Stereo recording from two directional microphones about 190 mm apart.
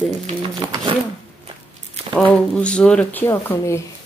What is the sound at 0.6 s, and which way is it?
Speech, 20° right (ahead or behind).